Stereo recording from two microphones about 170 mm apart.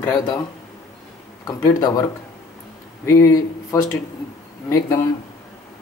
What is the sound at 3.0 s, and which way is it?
Speech, 20° left (ahead or behind).